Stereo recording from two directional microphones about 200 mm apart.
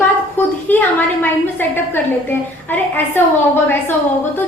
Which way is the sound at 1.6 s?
10° left (ahead or behind).